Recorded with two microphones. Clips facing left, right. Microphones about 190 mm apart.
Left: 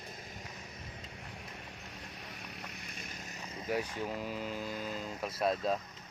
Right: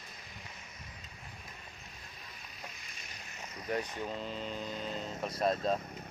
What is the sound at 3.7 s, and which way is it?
Speech, 5° left (ahead or behind).